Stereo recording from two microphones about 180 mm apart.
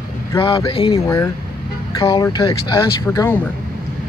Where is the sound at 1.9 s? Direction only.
20° left (ahead or behind).